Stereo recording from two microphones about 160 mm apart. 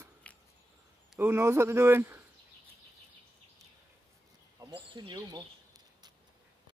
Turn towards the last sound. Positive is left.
turn(degrees=-25)  # may be behind; listen again after turning